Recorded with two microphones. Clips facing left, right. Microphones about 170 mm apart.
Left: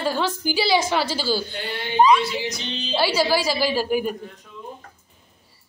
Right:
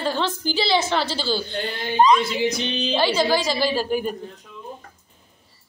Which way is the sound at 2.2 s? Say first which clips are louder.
Right 4 dB; 55° right (ahead or behind).